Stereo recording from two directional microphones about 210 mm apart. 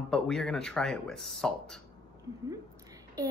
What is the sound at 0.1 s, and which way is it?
Speech, 5° left (ahead or behind).